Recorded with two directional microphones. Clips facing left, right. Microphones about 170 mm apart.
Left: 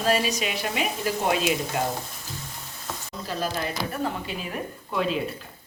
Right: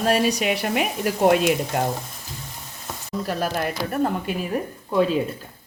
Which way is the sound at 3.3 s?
60° right (ahead or behind).